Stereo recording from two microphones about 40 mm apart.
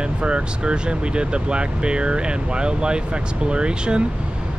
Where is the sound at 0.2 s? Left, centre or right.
Right.